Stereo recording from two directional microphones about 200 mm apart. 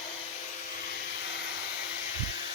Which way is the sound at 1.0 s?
55° left (ahead or behind).